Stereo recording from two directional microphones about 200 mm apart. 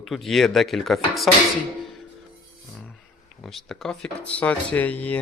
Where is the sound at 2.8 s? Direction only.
Centre (ahead or behind).